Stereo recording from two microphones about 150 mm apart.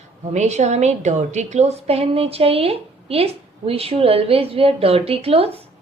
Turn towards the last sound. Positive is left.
turn(degrees=-40)  # may be behind; listen again after turning